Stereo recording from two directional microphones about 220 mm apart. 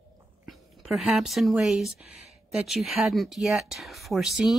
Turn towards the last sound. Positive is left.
turn(degrees=0)  # may be behind; listen again after turning